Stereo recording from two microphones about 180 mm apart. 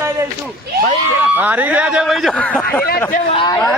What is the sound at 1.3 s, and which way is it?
Speech, 10° right (ahead or behind).